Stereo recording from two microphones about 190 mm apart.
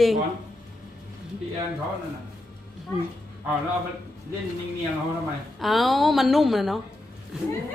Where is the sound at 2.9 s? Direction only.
10° left (ahead or behind).